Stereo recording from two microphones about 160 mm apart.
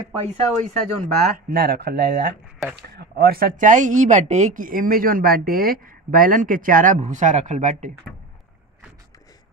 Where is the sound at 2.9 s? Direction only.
75° right (ahead or behind); by 7.9 s 55° right (ahead or behind).